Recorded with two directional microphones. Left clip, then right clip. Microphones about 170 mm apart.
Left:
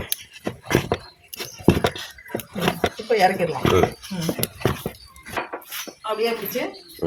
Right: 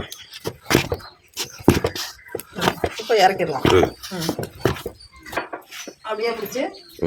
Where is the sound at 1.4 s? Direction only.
15° right (ahead or behind).